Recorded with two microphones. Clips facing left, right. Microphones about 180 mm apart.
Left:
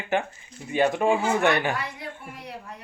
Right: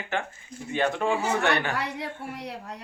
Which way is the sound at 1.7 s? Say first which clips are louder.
Right 2 dB; 70° right (ahead or behind).